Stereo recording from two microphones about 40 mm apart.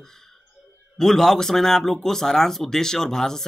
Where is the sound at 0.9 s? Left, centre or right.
Centre.